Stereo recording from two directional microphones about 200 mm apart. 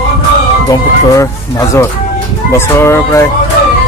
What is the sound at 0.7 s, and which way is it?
Speech, 15° left (ahead or behind).